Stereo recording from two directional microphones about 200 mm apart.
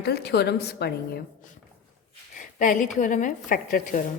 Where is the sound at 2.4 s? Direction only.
40° left (ahead or behind).